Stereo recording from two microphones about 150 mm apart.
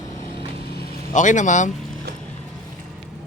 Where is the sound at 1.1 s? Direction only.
55° left (ahead or behind).